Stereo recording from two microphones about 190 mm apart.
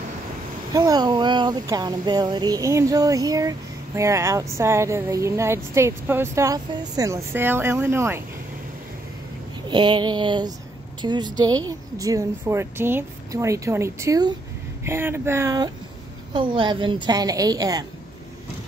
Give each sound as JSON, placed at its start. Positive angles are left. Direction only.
{"t": 0.7, "sound": "speech", "side_deg": -20}
{"t": 9.7, "sound": "a woman's voice", "side_deg": -25}